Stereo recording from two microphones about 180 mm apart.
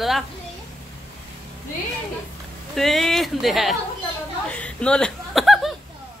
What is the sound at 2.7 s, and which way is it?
Speech, centre (ahead or behind).